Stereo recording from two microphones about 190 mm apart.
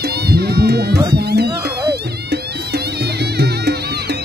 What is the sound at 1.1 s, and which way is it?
Speech, 60° right (ahead or behind).